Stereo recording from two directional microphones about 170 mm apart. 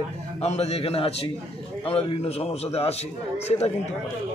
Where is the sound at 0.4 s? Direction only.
40° left (ahead or behind).